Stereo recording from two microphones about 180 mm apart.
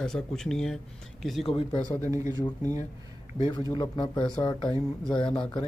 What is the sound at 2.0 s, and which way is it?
Speech, 15° right (ahead or behind).